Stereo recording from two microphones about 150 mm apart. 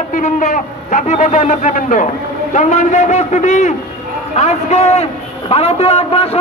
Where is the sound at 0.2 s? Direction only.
55° left (ahead or behind).